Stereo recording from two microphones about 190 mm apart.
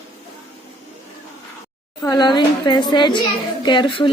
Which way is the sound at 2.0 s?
20° left (ahead or behind).